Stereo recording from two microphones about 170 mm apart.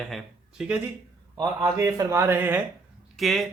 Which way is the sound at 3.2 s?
Centre (ahead or behind).